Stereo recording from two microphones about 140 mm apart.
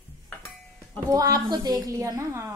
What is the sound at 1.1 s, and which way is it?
A woman's voice, 25° right (ahead or behind).